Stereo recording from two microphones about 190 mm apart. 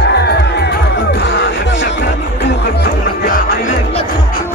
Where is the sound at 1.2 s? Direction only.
70° left (ahead or behind).